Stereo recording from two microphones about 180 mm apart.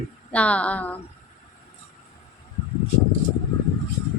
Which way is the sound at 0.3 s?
5° left (ahead or behind).